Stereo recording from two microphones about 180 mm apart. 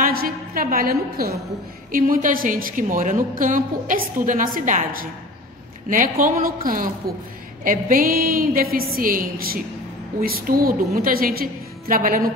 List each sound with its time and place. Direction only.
0.0 s a sound: 55° right (ahead or behind)
1.9 s a woman's voice: 50° right (ahead or behind)
5.9 s a woman's voice: 50° right (ahead or behind)